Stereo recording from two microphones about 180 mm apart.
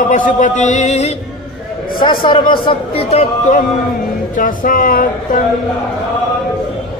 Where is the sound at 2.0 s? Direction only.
25° left (ahead or behind); by 5.4 s 50° left (ahead or behind).